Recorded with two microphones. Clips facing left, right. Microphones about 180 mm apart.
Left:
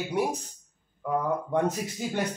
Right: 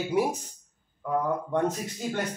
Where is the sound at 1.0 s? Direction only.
10° left (ahead or behind).